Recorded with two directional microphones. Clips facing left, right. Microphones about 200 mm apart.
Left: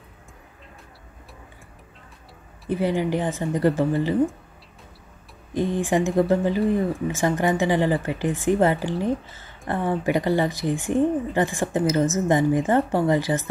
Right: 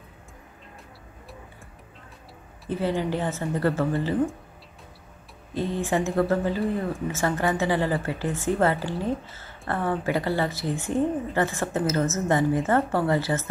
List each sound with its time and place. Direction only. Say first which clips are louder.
2.7 s speech: left 3 dB; 15° left (ahead or behind)
5.5 s speech: left 3 dB; 15° left (ahead or behind)